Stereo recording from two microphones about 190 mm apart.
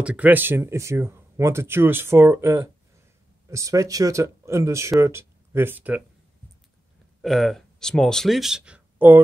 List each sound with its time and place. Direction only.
0.0 s speech: 5° right (ahead or behind)
7.2 s speech: centre (ahead or behind)